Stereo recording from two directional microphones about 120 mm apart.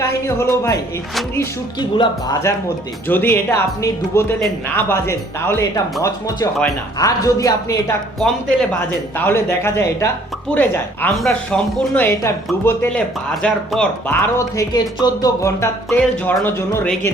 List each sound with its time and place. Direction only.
0.0 s speech: 25° left (ahead or behind)
1.8 s speech: 35° left (ahead or behind)
3.1 s speech: 15° left (ahead or behind)
9.1 s speech: 15° left (ahead or behind)
12.0 s speech: 20° left (ahead or behind)
14.3 s speech: 30° left (ahead or behind)